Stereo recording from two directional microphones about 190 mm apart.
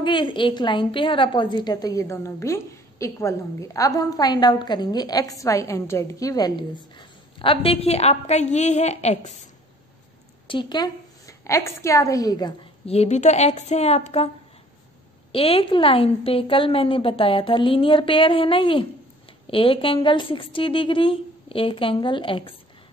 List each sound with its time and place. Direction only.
0.0 s a woman's voice: 25° left (ahead or behind)
10.5 s a woman's voice: 25° left (ahead or behind)
12.9 s a woman's voice: 35° left (ahead or behind)
15.3 s a woman's voice: 30° left (ahead or behind)